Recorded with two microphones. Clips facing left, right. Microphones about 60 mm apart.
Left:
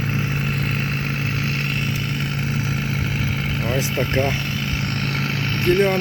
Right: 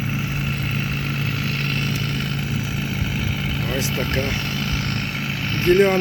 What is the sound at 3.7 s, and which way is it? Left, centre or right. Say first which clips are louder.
Speech: left 3 dB; left.